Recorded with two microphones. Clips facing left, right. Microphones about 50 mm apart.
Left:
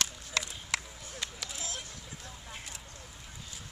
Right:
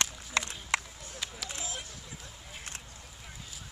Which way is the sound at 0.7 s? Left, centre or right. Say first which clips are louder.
Right 3 dB; centre.